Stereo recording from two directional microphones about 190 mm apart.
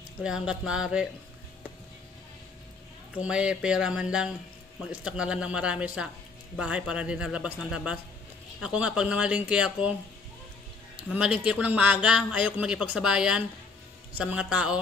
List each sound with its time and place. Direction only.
0.2 s speech: 5° right (ahead or behind)
3.2 s speech: 5° right (ahead or behind)
11.4 s speech: 5° right (ahead or behind)